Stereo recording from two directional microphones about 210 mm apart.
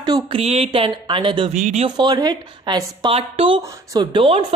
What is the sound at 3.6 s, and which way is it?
Speech, 15° right (ahead or behind).